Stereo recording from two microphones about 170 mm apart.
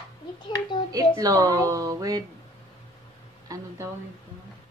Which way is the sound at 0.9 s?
20° right (ahead or behind).